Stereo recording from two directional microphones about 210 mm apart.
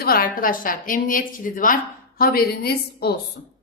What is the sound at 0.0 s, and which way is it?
A woman's voice, 45° left (ahead or behind).